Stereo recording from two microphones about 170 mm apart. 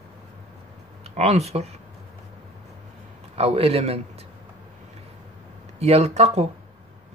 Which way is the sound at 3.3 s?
35° right (ahead or behind).